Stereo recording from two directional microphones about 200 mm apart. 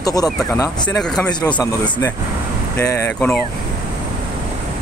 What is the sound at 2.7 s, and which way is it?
Speech, 10° left (ahead or behind).